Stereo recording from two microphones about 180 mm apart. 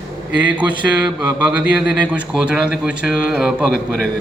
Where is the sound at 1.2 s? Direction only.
20° right (ahead or behind).